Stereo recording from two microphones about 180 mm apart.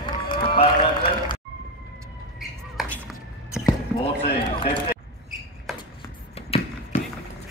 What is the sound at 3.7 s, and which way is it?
Basketball bounce, 30° left (ahead or behind).